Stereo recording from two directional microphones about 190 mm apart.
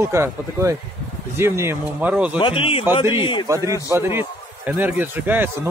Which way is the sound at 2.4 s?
30° left (ahead or behind).